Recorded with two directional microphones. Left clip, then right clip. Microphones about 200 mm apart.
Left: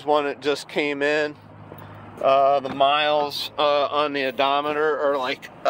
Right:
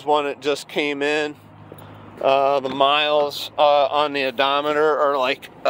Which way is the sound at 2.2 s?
25° right (ahead or behind).